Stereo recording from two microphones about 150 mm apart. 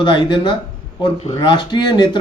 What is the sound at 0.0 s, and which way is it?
Speech, 35° left (ahead or behind).